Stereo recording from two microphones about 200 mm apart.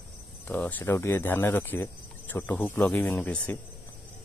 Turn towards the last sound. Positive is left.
turn(degrees=5)  # may be behind; listen again after turning